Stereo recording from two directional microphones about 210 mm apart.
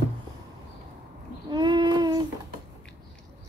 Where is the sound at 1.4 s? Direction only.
20° right (ahead or behind).